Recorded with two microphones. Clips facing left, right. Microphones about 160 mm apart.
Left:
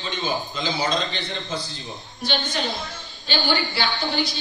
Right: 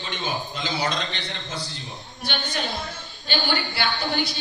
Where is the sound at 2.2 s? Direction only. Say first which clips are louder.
Left 3 dB; 55° right (ahead or behind).